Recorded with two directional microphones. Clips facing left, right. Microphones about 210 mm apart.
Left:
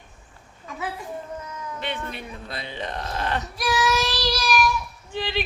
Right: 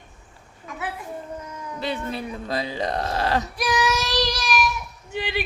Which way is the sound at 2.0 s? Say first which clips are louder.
Right 5 dB; 35° right (ahead or behind).